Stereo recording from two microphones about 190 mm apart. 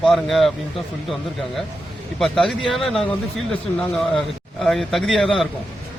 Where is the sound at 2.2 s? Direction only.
Centre (ahead or behind).